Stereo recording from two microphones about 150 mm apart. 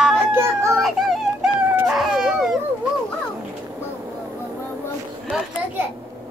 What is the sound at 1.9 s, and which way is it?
Dog, centre (ahead or behind).